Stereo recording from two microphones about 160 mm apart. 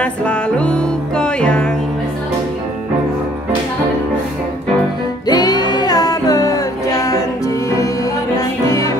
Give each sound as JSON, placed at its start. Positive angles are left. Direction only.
{"t": 0.0, "sound": "music", "side_deg": 5}
{"t": 5.2, "sound": "music", "side_deg": 25}